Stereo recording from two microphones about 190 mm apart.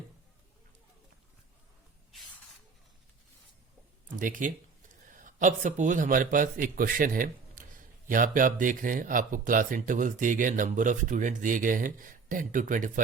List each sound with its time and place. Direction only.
4.2 s a man's voice: 45° right (ahead or behind)